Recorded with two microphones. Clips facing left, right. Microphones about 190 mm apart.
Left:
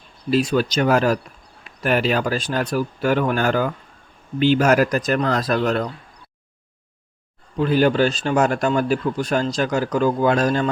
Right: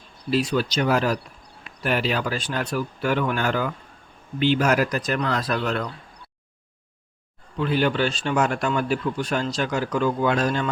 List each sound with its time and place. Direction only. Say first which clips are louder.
0.3 s speech: left 4 dB; 45° left (ahead or behind)
7.6 s a man's voice: left 5 dB; 40° left (ahead or behind)